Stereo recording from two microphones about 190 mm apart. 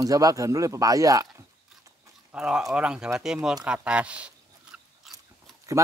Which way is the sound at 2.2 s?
5° right (ahead or behind).